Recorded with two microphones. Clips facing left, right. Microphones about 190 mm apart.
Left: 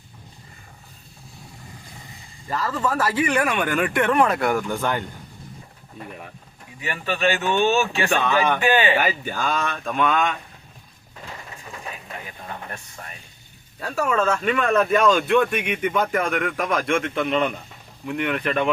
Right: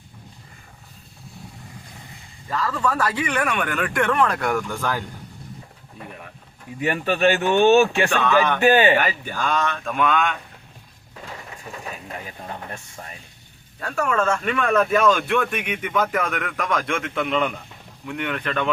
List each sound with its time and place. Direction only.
2.5 s speech: 5° left (ahead or behind)
6.7 s speech: 50° right (ahead or behind)
8.1 s speech: 10° left (ahead or behind)
8.6 s speech: 45° right (ahead or behind)
9.0 s speech: 10° left (ahead or behind)
13.7 s speech: 5° left (ahead or behind)